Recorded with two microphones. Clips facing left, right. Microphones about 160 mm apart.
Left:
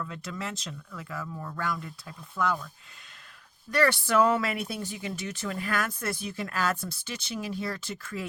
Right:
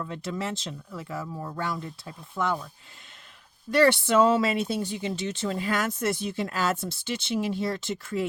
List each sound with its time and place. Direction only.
0.0 s speech: 30° right (ahead or behind)
3.7 s speech: 25° right (ahead or behind)